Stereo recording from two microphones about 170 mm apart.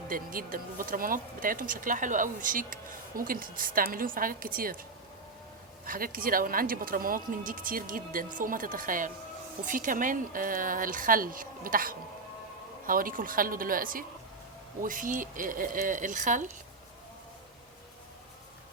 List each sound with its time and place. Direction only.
0.1 s speech: 55° right (ahead or behind)